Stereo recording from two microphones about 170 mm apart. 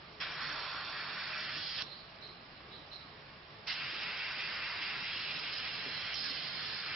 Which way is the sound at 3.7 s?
Centre (ahead or behind).